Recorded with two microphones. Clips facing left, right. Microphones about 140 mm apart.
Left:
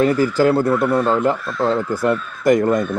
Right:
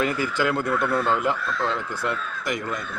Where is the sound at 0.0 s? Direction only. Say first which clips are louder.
Left 9 dB; 40° left (ahead or behind).